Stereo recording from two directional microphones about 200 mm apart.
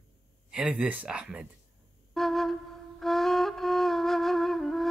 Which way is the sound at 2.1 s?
Centre (ahead or behind).